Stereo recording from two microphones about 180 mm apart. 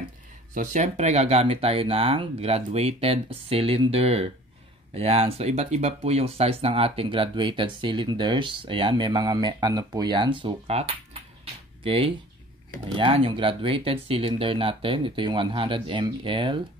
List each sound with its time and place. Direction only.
0.6 s speech: 40° right (ahead or behind)